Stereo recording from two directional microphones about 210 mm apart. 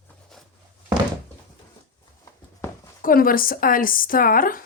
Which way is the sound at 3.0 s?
45° left (ahead or behind).